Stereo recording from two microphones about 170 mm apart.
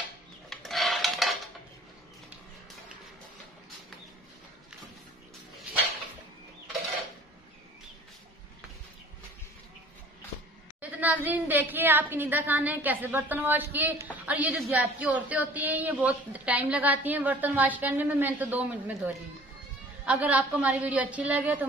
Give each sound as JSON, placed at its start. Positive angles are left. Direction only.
{"t": 0.5, "sound": "rub", "side_deg": 0}
{"t": 10.8, "sound": "a woman's voice", "side_deg": -10}